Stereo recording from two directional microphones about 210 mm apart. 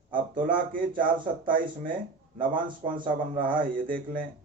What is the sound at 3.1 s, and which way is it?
Speech, 40° right (ahead or behind).